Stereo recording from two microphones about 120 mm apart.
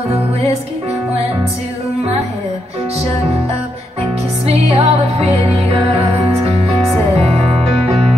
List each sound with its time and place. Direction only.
4.5 s music: 60° right (ahead or behind)